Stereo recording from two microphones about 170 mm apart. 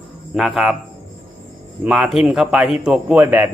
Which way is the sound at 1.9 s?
Centre (ahead or behind).